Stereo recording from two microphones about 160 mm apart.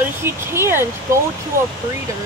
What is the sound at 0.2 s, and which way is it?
Speech, 15° right (ahead or behind).